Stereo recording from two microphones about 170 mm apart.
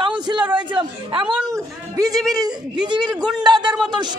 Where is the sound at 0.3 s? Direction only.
25° right (ahead or behind).